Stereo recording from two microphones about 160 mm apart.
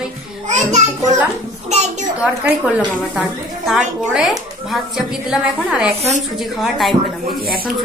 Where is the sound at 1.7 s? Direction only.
45° right (ahead or behind).